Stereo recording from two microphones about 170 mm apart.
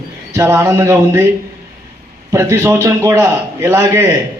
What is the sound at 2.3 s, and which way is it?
Speech, 15° right (ahead or behind).